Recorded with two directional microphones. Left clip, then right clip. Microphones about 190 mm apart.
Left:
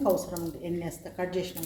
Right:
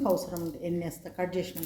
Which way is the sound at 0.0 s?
25° right (ahead or behind).